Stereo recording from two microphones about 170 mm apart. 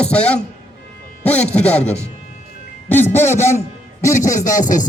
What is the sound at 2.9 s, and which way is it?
Speech, 10° left (ahead or behind).